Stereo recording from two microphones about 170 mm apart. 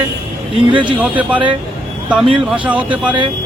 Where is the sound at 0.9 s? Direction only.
10° right (ahead or behind).